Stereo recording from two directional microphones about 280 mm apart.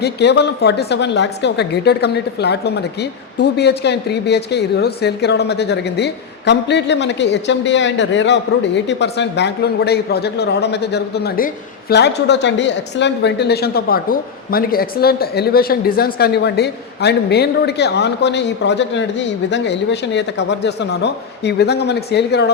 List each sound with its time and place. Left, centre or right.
0.0 s a woman's voice: left